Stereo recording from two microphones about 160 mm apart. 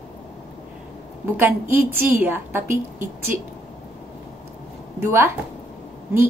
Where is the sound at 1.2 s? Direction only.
15° right (ahead or behind).